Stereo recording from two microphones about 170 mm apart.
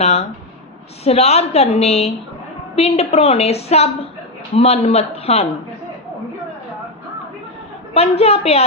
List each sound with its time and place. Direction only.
0.0 s a woman's voice: 40° left (ahead or behind)
7.9 s a woman's voice: 35° left (ahead or behind)